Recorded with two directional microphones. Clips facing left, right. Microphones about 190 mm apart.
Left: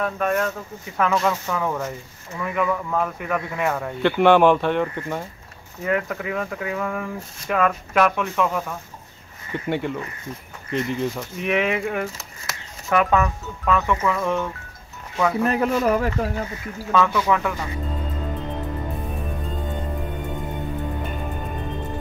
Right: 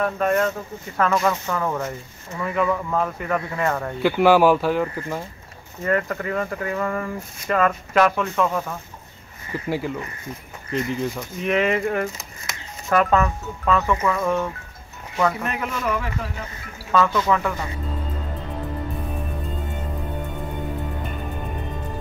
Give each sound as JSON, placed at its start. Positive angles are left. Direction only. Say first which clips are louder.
{"t": 0.0, "sound": "speech", "louder": "right 2 dB", "side_deg": 0}
{"t": 15.4, "sound": "speech", "louder": "left 6 dB", "side_deg": 35}
{"t": 17.1, "sound": "speech", "louder": "even", "side_deg": 10}